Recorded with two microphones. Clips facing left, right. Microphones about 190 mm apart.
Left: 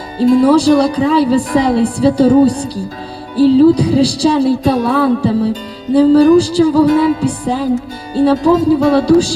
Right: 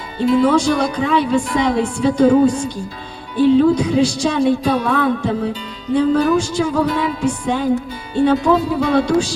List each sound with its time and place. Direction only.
0.4 s speech: 35° left (ahead or behind)